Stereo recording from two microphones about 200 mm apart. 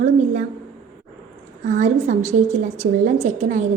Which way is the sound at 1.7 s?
35° right (ahead or behind).